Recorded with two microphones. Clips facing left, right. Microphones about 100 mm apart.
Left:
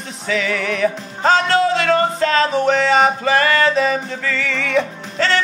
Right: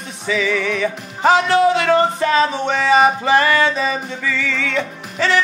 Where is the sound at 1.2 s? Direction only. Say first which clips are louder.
Right 2 dB; 15° right (ahead or behind).